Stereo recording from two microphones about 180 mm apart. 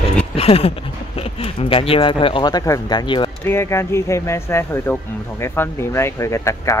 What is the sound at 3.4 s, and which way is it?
Speech, 15° left (ahead or behind).